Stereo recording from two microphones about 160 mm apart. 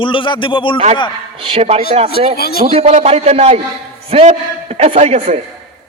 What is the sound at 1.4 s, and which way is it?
Speech, 40° right (ahead or behind).